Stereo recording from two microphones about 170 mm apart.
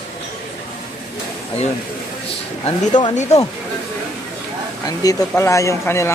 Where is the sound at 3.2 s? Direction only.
40° left (ahead or behind).